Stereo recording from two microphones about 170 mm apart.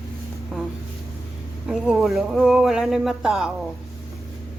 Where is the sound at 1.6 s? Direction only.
5° right (ahead or behind).